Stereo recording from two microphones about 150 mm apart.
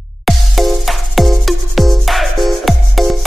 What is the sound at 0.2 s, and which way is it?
Music, centre (ahead or behind).